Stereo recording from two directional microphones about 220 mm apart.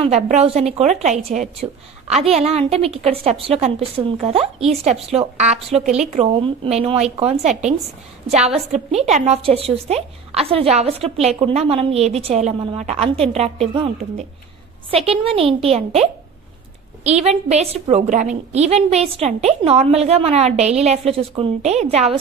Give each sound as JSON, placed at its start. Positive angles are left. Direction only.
{"t": 0.0, "sound": "a woman's voice", "side_deg": -30}